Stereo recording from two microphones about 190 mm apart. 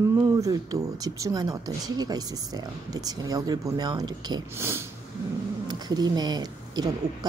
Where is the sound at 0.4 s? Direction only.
20° right (ahead or behind).